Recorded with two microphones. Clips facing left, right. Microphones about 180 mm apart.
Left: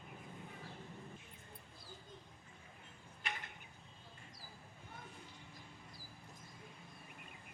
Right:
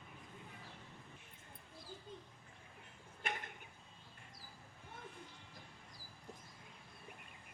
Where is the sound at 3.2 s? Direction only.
50° right (ahead or behind).